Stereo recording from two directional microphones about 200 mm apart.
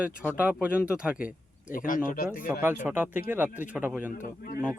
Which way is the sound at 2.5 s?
10° right (ahead or behind).